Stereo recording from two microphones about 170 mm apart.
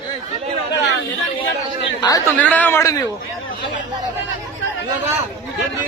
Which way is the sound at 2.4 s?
10° left (ahead or behind).